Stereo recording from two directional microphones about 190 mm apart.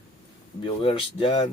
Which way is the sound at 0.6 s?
25° left (ahead or behind).